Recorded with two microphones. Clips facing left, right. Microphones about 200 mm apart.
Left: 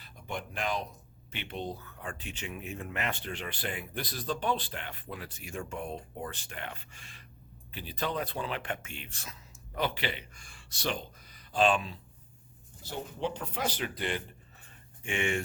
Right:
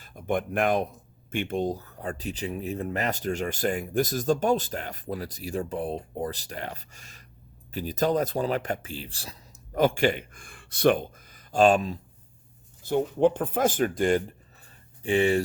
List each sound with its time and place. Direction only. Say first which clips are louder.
0.0 s speech: right 11 dB; 50° right (ahead or behind); by 15.4 s 35° right (ahead or behind)